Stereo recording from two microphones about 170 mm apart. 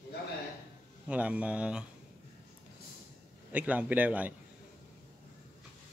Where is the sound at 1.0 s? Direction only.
5° right (ahead or behind).